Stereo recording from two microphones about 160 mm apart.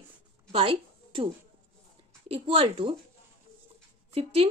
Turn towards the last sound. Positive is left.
turn(degrees=-35)  # may be behind; listen again after turning